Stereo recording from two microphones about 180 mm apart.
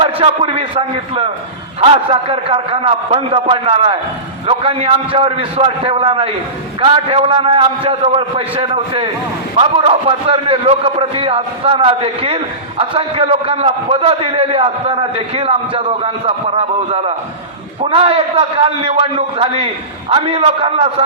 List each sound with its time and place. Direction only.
0.0 s a man's voice: 30° right (ahead or behind)